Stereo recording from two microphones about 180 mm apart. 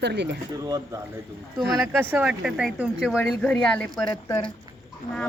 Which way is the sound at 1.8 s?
10° right (ahead or behind).